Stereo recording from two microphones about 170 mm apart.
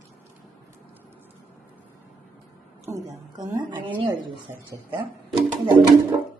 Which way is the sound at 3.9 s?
10° right (ahead or behind).